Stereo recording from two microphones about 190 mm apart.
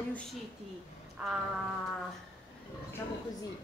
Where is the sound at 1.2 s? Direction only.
5° right (ahead or behind).